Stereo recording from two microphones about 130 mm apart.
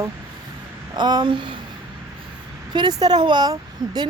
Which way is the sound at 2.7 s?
35° right (ahead or behind).